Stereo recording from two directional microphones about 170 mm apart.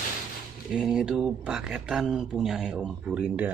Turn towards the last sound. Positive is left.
turn(degrees=-10)  # may be behind; listen again after turning